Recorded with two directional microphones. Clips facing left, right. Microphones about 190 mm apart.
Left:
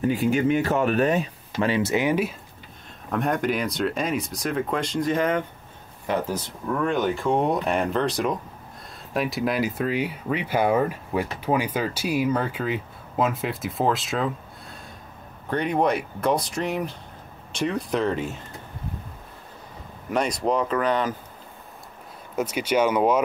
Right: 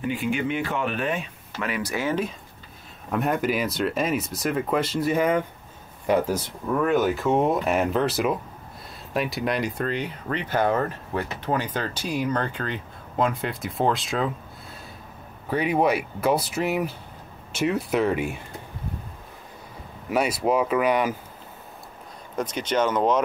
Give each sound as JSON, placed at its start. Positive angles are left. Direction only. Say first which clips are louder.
{"t": 0.0, "sound": "speech", "louder": "left 5 dB", "side_deg": 40}
{"t": 1.6, "sound": "speech", "louder": "left 5 dB", "side_deg": 25}
{"t": 3.1, "sound": "speech", "louder": "even", "side_deg": -5}
{"t": 20.1, "sound": "speech", "louder": "right 1 dB", "side_deg": -5}
{"t": 22.3, "sound": "speech", "louder": "left 2 dB", "side_deg": 10}